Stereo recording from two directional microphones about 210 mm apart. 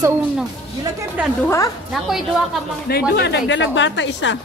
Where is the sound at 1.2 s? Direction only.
5° right (ahead or behind).